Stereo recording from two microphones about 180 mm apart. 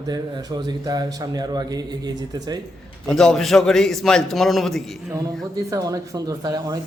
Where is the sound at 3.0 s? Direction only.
5° left (ahead or behind).